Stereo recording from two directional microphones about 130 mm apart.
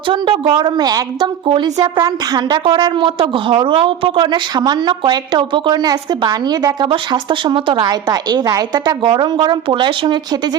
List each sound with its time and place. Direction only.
0.1 s a woman's voice: 40° right (ahead or behind)